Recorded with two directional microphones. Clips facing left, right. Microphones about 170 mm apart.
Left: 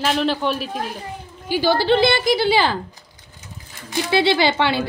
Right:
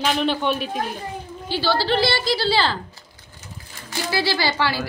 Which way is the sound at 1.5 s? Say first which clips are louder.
Left 4 dB; 15° left (ahead or behind).